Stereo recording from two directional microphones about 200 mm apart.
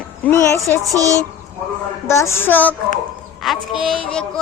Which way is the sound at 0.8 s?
15° right (ahead or behind).